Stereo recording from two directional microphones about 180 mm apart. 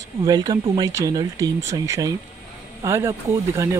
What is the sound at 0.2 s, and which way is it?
Speech, 20° right (ahead or behind).